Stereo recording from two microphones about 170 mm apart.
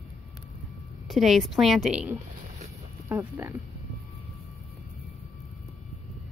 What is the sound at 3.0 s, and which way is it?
Speech, 15° right (ahead or behind).